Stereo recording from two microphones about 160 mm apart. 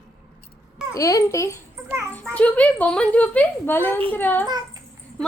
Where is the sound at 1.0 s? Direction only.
20° left (ahead or behind).